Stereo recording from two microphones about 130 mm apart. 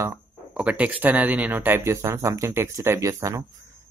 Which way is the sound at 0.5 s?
10° right (ahead or behind).